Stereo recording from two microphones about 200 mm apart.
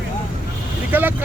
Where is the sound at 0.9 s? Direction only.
10° right (ahead or behind).